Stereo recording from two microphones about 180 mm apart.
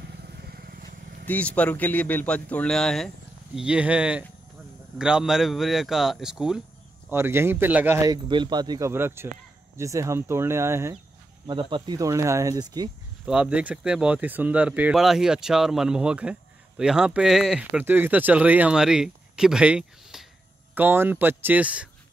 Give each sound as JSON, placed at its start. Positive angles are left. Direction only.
{"t": 0.2, "sound": "vehicle", "side_deg": -60}
{"t": 1.2, "sound": "a man's voice", "side_deg": 10}
{"t": 13.2, "sound": "a man's voice", "side_deg": -5}